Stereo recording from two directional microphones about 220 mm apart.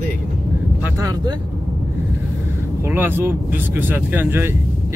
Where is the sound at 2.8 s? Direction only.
10° right (ahead or behind).